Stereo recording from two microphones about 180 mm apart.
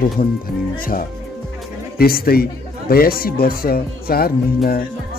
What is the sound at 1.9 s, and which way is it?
A man's voice, 55° left (ahead or behind).